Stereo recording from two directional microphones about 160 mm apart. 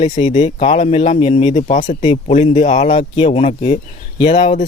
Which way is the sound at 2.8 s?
35° left (ahead or behind).